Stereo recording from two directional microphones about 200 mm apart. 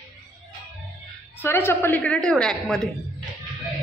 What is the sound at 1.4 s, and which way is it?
A woman's voice, 10° left (ahead or behind).